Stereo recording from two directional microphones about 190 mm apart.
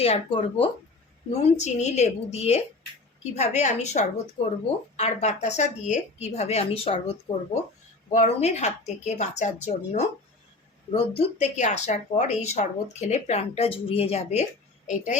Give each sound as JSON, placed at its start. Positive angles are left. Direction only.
{"t": 0.0, "sound": "speech", "side_deg": 30}